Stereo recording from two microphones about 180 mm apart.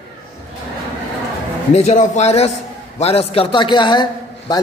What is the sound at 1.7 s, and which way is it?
A man's voice, 40° left (ahead or behind).